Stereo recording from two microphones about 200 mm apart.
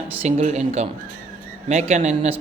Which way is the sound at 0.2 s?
35° right (ahead or behind).